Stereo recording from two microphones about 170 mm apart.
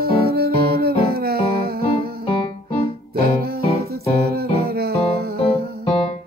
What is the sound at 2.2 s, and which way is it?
Music, 30° left (ahead or behind).